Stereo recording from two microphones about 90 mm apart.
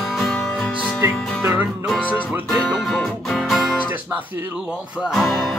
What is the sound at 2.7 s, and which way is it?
Music, centre (ahead or behind).